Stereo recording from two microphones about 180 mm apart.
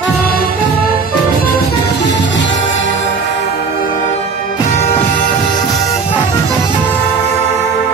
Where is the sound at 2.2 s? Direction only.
90° left.